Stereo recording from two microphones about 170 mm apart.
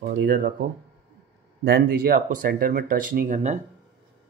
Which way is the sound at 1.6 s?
65° right (ahead or behind).